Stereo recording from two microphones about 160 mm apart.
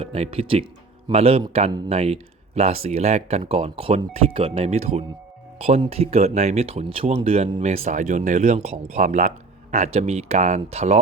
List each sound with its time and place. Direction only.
0.0 s speech: 35° right (ahead or behind)